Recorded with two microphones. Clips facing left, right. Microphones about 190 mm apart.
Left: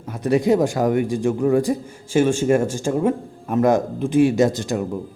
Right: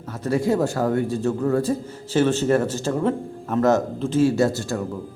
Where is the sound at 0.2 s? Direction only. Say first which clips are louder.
Left 4 dB; 15° left (ahead or behind).